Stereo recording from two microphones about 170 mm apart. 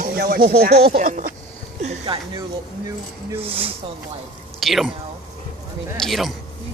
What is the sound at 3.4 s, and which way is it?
Speech, 35° right (ahead or behind).